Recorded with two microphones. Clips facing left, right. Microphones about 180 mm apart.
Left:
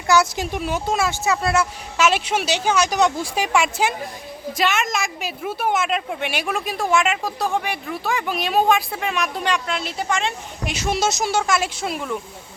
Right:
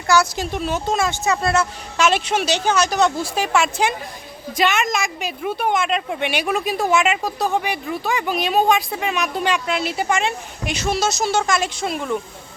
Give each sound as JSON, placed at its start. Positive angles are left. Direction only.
{"t": 0.1, "sound": "speech", "side_deg": 20}
{"t": 10.8, "sound": "speech", "side_deg": 20}
{"t": 11.3, "sound": "speech", "side_deg": 5}